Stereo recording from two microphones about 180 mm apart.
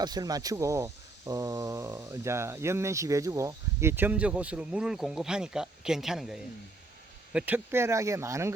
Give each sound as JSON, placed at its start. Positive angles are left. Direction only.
{"t": 0.0, "sound": "speech", "side_deg": -20}